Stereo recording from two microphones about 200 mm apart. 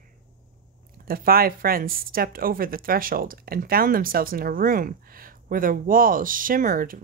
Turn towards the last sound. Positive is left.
turn(degrees=-45)  # may be behind; listen again after turning